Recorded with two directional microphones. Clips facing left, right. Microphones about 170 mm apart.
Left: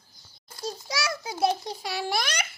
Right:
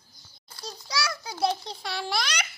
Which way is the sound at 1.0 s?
25° left (ahead or behind).